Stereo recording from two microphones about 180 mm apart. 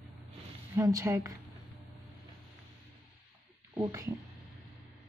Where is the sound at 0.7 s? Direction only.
20° right (ahead or behind).